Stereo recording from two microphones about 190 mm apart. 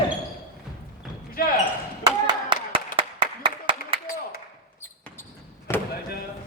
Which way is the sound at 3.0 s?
30° right (ahead or behind).